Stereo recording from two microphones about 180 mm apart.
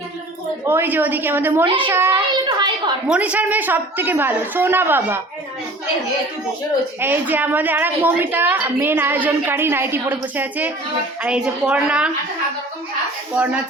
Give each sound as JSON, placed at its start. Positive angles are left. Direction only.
{"t": 0.7, "sound": "a woman's voice", "side_deg": -10}
{"t": 1.6, "sound": "a child's voice", "side_deg": -30}
{"t": 1.9, "sound": "a woman's voice", "side_deg": -15}
{"t": 2.3, "sound": "a sound", "side_deg": -25}
{"t": 3.1, "sound": "a woman's voice", "side_deg": -10}
{"t": 7.0, "sound": "a woman's voice", "side_deg": -10}
{"t": 13.3, "sound": "a woman's voice", "side_deg": -5}